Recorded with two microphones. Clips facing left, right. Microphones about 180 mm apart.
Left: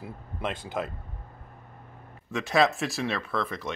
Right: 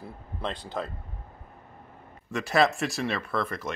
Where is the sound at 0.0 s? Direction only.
5° left (ahead or behind).